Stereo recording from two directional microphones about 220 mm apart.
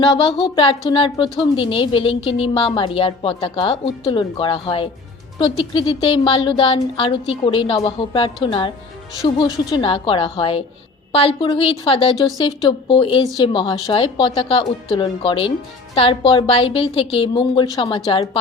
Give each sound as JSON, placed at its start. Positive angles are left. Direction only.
{"t": 0.0, "sound": "a woman's voice", "side_deg": 20}